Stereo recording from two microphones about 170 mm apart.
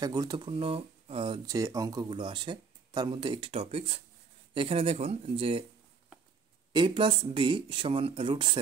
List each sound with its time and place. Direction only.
0.0 s speech: 20° right (ahead or behind)
6.7 s speech: 30° right (ahead or behind)